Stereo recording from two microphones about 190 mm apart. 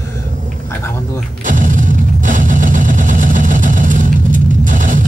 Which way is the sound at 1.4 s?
40° right (ahead or behind).